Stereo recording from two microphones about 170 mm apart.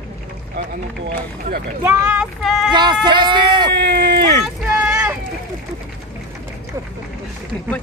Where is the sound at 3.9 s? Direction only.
65° right (ahead or behind).